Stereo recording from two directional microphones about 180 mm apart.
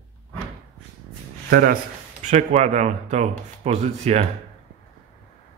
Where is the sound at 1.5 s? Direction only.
55° right (ahead or behind).